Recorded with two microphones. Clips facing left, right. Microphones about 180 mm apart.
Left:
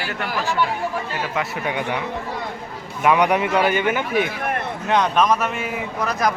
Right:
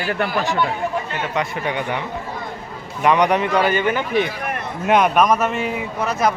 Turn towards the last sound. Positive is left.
turn(degrees=-5)  # may be behind; listen again after turning